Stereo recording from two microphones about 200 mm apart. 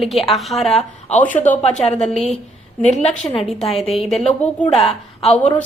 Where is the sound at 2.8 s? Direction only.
35° left (ahead or behind).